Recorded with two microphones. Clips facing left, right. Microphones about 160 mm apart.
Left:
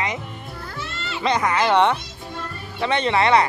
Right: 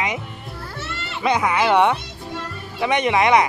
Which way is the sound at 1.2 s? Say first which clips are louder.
Right 1 dB; 10° right (ahead or behind).